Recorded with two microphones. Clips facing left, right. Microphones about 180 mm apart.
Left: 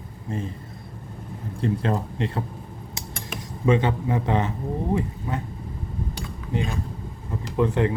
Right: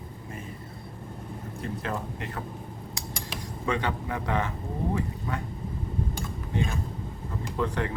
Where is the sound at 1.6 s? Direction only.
30° left (ahead or behind).